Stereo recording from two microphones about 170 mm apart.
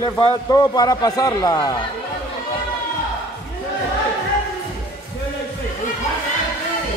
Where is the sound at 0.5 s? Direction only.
25° left (ahead or behind).